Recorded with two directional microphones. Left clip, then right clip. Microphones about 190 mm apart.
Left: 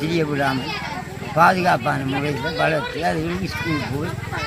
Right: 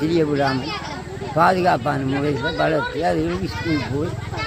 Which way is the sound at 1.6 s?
5° right (ahead or behind).